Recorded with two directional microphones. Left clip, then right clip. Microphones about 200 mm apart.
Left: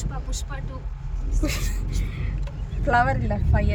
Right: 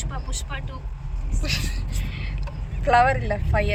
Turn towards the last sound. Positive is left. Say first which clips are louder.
# right 4 dB
turn(degrees=10)  # may be behind; listen again after turning